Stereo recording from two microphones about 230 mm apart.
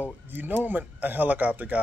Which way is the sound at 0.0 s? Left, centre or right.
Centre.